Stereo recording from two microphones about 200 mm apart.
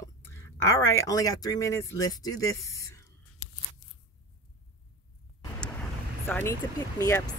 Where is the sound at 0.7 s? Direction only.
15° left (ahead or behind).